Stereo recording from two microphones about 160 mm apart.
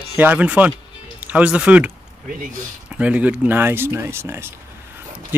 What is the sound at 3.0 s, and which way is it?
Speech, 10° right (ahead or behind).